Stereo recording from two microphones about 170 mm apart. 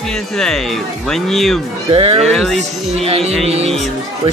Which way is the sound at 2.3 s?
Centre (ahead or behind).